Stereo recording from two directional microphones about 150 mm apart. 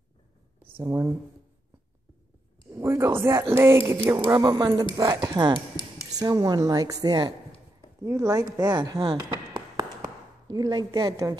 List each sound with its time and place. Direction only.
0.7 s a woman's voice: 20° right (ahead or behind)
2.7 s a woman's voice: 20° right (ahead or behind)
9.8 s a sound: 25° right (ahead or behind)